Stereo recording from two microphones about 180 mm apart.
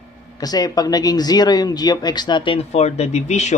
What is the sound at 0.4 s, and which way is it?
Speech, 20° left (ahead or behind).